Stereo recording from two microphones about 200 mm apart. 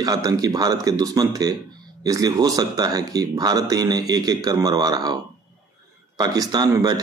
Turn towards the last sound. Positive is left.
turn(degrees=-20)  # may be behind; listen again after turning